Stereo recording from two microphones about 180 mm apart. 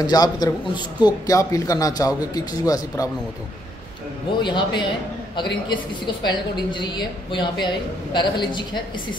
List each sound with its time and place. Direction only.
0.0 s a woman's voice: 20° left (ahead or behind)
4.4 s a woman's voice: 25° left (ahead or behind)